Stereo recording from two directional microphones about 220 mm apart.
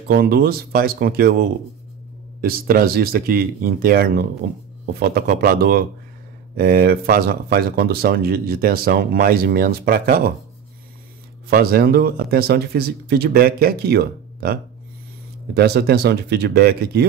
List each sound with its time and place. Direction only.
0.1 s speech: 45° right (ahead or behind)
11.5 s speech: 45° right (ahead or behind)